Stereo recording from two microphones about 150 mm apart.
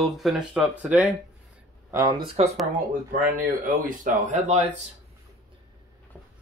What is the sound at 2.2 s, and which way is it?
Speech, 45° right (ahead or behind).